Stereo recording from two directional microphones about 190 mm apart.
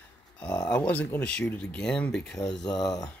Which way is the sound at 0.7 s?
10° left (ahead or behind).